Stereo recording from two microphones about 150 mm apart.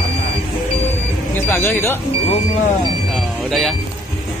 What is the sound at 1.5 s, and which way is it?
Speech, 15° left (ahead or behind).